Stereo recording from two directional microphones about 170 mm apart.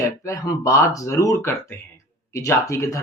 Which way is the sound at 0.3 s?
20° left (ahead or behind).